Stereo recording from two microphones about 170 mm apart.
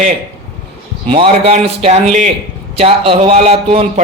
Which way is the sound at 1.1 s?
35° right (ahead or behind).